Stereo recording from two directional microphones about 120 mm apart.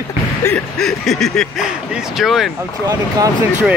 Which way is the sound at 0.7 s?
5° left (ahead or behind).